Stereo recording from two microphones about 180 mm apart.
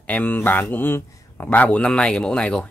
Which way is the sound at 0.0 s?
10° left (ahead or behind).